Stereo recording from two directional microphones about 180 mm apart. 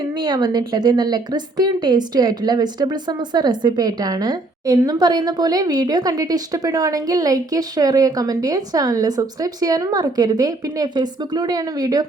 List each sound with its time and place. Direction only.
0.1 s a woman's voice: 25° right (ahead or behind)